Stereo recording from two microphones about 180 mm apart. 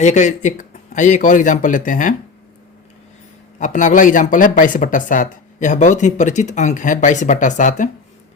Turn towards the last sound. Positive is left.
turn(degrees=45)  # may be behind; listen again after turning